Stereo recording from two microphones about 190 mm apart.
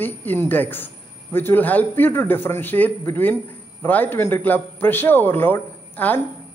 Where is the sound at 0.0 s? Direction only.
10° left (ahead or behind).